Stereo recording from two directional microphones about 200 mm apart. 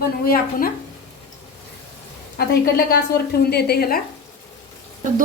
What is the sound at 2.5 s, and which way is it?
A woman's voice, 55° left (ahead or behind).